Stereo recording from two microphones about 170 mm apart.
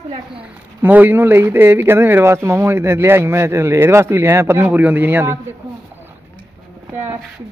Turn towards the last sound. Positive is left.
turn(degrees=-15)  # may be behind; listen again after turning